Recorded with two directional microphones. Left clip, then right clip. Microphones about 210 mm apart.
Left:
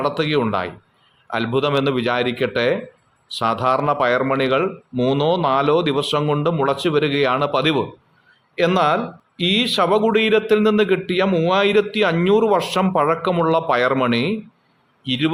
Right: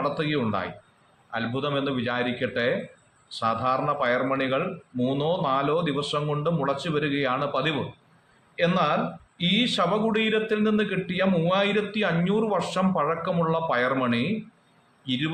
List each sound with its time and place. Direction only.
0.1 s a man's voice: 55° left (ahead or behind)